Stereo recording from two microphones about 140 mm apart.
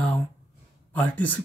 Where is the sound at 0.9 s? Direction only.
10° left (ahead or behind).